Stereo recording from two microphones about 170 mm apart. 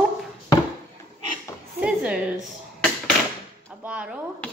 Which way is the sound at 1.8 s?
5° right (ahead or behind).